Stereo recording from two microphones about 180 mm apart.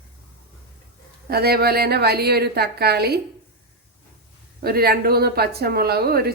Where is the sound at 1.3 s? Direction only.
60° right (ahead or behind).